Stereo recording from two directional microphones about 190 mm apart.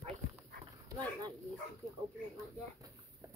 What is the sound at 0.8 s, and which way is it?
Dog, 20° right (ahead or behind).